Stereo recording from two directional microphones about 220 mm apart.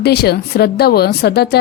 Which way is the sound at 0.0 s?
45° left (ahead or behind).